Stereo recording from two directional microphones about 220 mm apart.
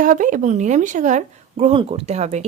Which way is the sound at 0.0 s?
35° right (ahead or behind).